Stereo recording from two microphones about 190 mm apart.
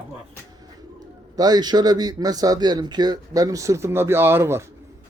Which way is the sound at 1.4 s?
20° right (ahead or behind).